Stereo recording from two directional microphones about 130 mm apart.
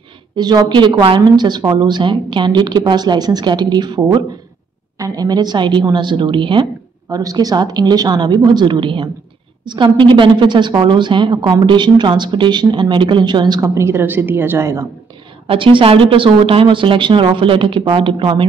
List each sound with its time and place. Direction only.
0.4 s a woman's voice: 35° right (ahead or behind)
13.6 s a woman's voice: 20° right (ahead or behind)
15.4 s a woman's voice: 40° right (ahead or behind)